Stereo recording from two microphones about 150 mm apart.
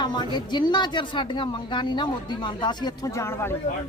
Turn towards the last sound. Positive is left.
turn(degrees=20)  # may be behind; listen again after turning